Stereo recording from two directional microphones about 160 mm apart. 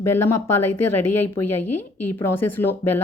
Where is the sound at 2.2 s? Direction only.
15° left (ahead or behind).